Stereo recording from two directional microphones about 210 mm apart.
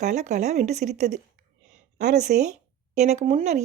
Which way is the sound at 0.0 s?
35° right (ahead or behind).